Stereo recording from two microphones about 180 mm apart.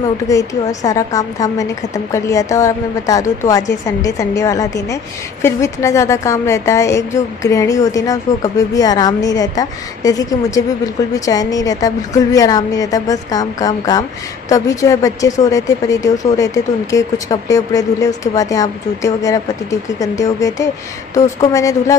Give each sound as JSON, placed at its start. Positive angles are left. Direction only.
{"t": 0.3, "sound": "a woman's voice", "side_deg": 20}